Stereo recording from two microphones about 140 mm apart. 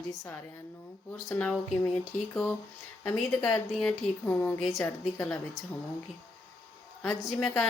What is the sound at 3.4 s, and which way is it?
A woman's voice, 20° left (ahead or behind).